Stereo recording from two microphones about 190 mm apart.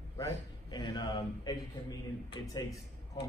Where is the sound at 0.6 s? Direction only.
20° left (ahead or behind).